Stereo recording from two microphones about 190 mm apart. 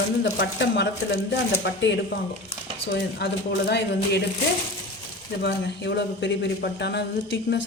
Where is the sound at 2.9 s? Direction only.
65° left (ahead or behind).